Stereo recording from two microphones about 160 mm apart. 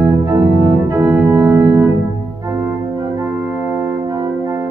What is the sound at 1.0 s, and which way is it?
Organ, 25° right (ahead or behind).